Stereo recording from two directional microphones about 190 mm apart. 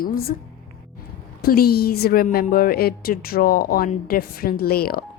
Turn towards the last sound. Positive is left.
turn(degrees=50)  # may be behind; listen again after turning